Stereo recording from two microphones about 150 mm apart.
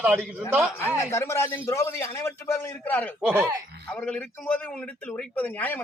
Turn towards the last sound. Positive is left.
turn(degrees=10)  # may be behind; listen again after turning